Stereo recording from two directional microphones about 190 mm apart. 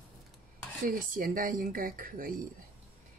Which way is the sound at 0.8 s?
50° right (ahead or behind).